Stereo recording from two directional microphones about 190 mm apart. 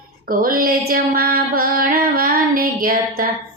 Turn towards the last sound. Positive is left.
turn(degrees=-50)  # may be behind; listen again after turning